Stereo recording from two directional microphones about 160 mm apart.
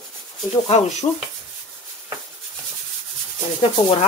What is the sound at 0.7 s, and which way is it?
Speech, 45° left (ahead or behind).